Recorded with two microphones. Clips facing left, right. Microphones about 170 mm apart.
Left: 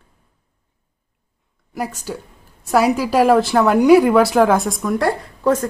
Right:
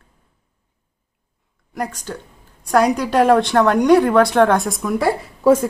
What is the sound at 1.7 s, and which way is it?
A woman's voice, 5° left (ahead or behind).